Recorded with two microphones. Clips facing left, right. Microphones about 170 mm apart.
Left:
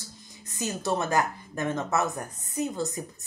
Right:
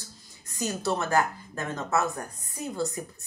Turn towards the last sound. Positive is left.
turn(degrees=20)  # may be behind; listen again after turning